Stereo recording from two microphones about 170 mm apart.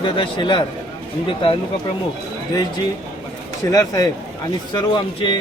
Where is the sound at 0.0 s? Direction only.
30° left (ahead or behind).